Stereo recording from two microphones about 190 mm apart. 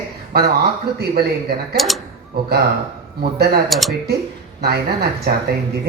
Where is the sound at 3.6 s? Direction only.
Centre (ahead or behind).